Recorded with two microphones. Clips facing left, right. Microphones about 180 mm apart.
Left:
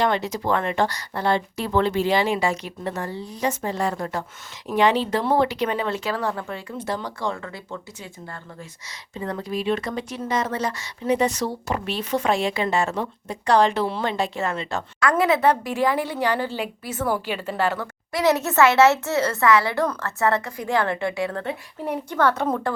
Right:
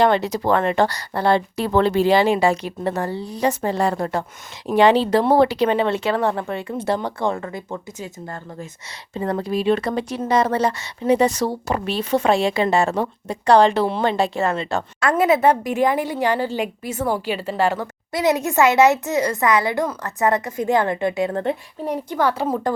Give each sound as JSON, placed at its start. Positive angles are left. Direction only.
{"t": 0.2, "sound": "speech", "side_deg": -35}
{"t": 2.5, "sound": "speech", "side_deg": -60}
{"t": 3.2, "sound": "speech", "side_deg": -35}
{"t": 7.0, "sound": "speech", "side_deg": -55}
{"t": 7.3, "sound": "speech", "side_deg": -35}
{"t": 15.2, "sound": "a woman's voice", "side_deg": -20}